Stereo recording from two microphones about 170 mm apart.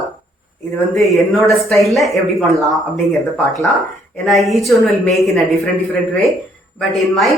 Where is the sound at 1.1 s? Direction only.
Centre (ahead or behind).